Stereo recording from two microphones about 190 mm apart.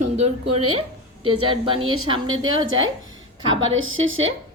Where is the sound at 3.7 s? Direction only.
90° right.